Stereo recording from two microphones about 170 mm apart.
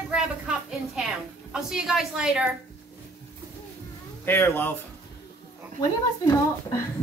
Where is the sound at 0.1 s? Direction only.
5° right (ahead or behind).